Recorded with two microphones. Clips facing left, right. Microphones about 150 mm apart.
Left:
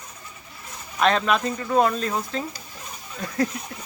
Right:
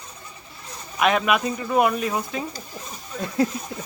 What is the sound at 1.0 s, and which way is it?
Speech, 10° right (ahead or behind).